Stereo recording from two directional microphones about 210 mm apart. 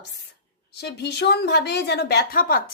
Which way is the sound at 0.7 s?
50° left (ahead or behind).